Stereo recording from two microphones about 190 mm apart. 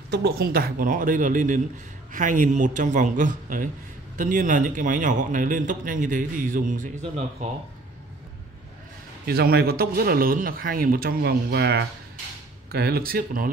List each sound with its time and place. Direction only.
0.1 s a man's voice: 55° right (ahead or behind); by 7.4 s 35° right (ahead or behind)
9.2 s a man's voice: 55° right (ahead or behind)